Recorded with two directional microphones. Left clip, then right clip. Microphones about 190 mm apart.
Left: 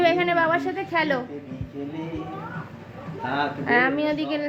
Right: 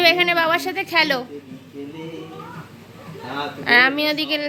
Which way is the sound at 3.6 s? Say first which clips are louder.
Right 7 dB; 15° right (ahead or behind).